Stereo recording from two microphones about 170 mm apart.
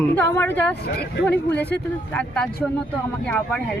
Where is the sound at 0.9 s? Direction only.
75° left (ahead or behind).